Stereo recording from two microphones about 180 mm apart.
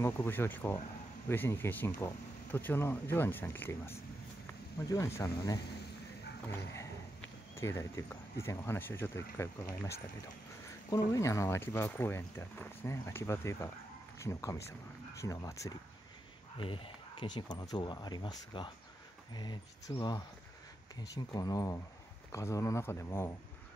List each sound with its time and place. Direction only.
0.0 s speech: 15° left (ahead or behind)
6.5 s dog: 15° left (ahead or behind)
7.2 s speech: 15° left (ahead or behind)
16.5 s speech: 30° left (ahead or behind); by 23.3 s 15° left (ahead or behind)